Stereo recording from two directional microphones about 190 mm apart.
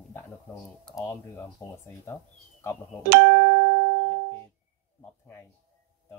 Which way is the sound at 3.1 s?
60° right (ahead or behind).